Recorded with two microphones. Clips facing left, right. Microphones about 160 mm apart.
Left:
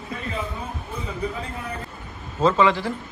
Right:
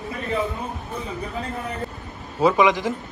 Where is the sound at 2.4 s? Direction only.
15° right (ahead or behind).